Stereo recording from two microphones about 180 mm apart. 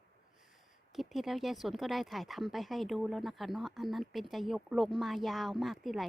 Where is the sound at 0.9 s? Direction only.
Centre (ahead or behind).